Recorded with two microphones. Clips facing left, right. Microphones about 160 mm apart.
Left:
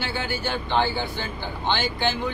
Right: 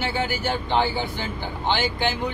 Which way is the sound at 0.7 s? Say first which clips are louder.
Even; 15° right (ahead or behind).